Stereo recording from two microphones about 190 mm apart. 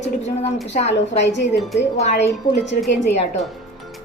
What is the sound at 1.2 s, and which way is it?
A woman's voice, 65° left (ahead or behind).